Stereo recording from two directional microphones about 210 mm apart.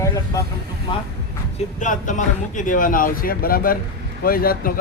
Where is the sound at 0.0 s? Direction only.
15° left (ahead or behind).